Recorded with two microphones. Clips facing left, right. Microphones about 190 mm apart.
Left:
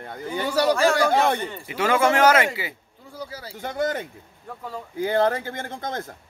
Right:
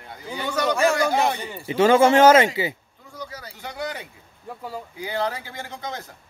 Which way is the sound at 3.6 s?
50° left (ahead or behind).